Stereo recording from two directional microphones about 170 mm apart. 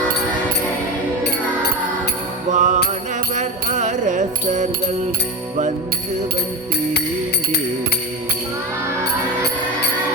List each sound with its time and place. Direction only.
2.5 s music: 45° right (ahead or behind)